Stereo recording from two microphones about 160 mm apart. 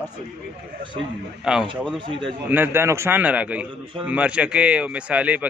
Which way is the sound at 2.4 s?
15° right (ahead or behind).